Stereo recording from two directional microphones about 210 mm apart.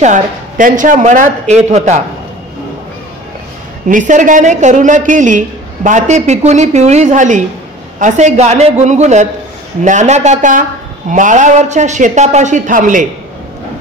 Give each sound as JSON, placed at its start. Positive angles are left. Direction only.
{"t": 0.0, "sound": "speech", "side_deg": -40}
{"t": 3.8, "sound": "speech", "side_deg": -35}